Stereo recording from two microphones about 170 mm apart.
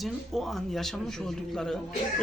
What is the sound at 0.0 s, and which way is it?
A man's voice, centre (ahead or behind).